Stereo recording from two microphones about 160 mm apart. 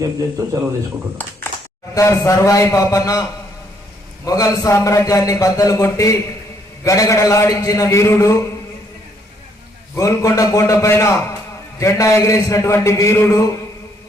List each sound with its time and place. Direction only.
0.0 s speech: 20° right (ahead or behind)
1.2 s a man's voice: 10° left (ahead or behind)
4.3 s a man's voice: 20° left (ahead or behind)
9.9 s a man's voice: 20° left (ahead or behind)